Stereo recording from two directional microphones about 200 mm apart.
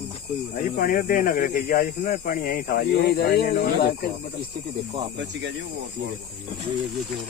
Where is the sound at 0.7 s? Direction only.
50° left (ahead or behind).